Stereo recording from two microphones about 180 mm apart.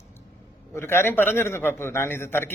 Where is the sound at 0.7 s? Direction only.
15° left (ahead or behind).